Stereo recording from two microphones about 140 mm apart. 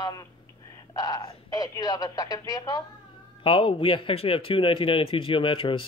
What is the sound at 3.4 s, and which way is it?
Speech, 40° left (ahead or behind).